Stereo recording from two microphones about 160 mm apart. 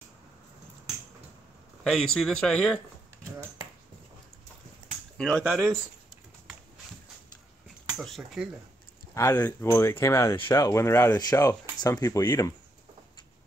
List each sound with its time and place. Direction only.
1.9 s speech: centre (ahead or behind)
5.1 s a sound: 5° left (ahead or behind)
5.4 s speech: 10° right (ahead or behind)
8.0 s speech: centre (ahead or behind)
9.1 s speech: 15° left (ahead or behind)